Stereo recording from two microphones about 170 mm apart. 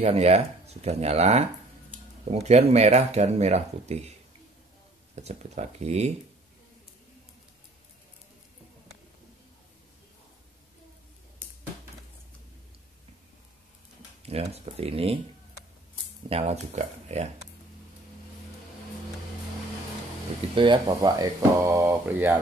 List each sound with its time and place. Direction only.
0.0 s speech: 40° right (ahead or behind)
5.1 s speech: 40° right (ahead or behind)
14.2 s speech: 35° right (ahead or behind)
16.3 s speech: 35° right (ahead or behind)
20.5 s speech: 30° right (ahead or behind); by 22.4 s 10° right (ahead or behind)